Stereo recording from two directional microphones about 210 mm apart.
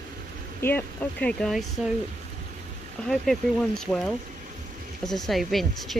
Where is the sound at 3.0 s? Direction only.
5° left (ahead or behind).